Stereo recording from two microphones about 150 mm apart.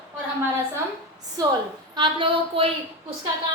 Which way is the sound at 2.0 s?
35° right (ahead or behind).